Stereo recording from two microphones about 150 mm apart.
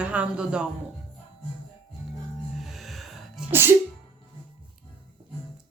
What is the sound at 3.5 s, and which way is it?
Sneeze, 15° right (ahead or behind).